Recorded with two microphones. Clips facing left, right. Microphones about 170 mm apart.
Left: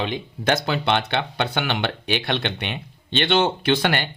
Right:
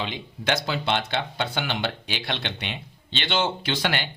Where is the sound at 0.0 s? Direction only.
50° left (ahead or behind).